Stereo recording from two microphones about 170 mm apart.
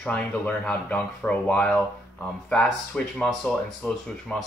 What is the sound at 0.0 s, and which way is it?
Speech, 5° left (ahead or behind).